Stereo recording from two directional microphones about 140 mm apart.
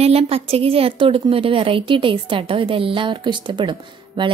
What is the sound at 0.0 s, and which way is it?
A woman's voice, 45° right (ahead or behind).